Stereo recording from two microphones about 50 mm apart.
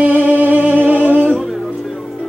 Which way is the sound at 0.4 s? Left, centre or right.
Right.